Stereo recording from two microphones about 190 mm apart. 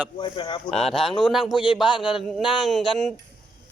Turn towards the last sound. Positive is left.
turn(degrees=0)  # may be behind; listen again after turning